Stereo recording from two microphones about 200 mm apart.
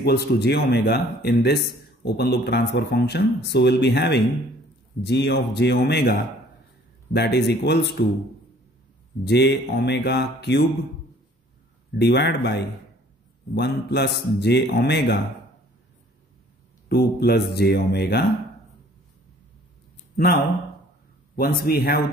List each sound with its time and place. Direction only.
0.0 s speech: 55° left (ahead or behind)
9.2 s speech: 55° left (ahead or behind)
11.9 s speech: 55° left (ahead or behind)
16.9 s speech: 55° left (ahead or behind)
21.4 s speech: 50° left (ahead or behind)